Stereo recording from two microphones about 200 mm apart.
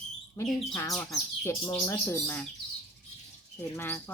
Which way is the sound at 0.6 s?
15° left (ahead or behind).